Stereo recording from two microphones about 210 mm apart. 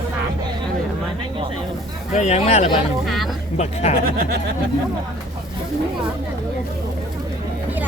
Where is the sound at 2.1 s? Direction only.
35° left (ahead or behind).